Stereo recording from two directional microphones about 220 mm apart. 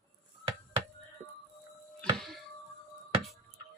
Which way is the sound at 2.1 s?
Centre (ahead or behind).